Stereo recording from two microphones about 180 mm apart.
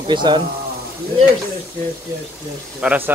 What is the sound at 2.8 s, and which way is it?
Speech, 5° right (ahead or behind).